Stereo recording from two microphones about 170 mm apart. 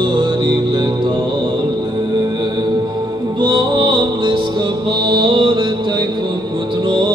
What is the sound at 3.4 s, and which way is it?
Music, 30° right (ahead or behind).